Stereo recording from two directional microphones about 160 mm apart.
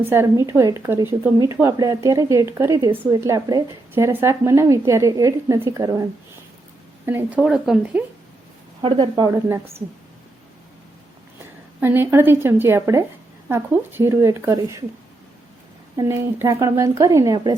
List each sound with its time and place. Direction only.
0.0 s a woman's voice: 15° right (ahead or behind)
8.8 s a woman's voice: 30° right (ahead or behind)
9.5 s a woman's voice: 15° right (ahead or behind)
11.8 s a woman's voice: 15° right (ahead or behind)
16.0 s a woman's voice: 20° right (ahead or behind)